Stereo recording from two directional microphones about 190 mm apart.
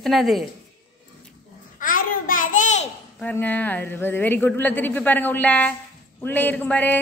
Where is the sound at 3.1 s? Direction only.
10° left (ahead or behind).